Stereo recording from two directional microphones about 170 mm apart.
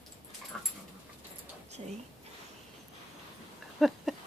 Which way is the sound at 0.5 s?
Centre (ahead or behind).